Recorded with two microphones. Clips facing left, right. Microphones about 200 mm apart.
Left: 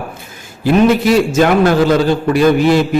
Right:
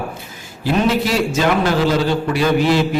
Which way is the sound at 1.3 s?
50° left (ahead or behind).